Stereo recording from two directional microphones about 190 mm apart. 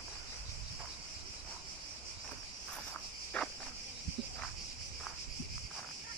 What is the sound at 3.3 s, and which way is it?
Cricket, 5° left (ahead or behind).